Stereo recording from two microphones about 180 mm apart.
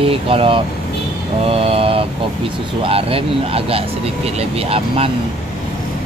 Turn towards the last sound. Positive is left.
turn(degrees=-30)  # may be behind; listen again after turning